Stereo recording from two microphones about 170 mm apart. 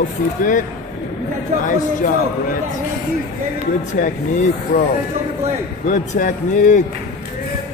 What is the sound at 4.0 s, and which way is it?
Speech, 55° left (ahead or behind).